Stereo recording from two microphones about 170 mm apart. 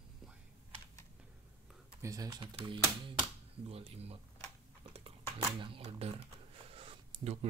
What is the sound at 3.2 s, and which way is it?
Speech, 35° right (ahead or behind).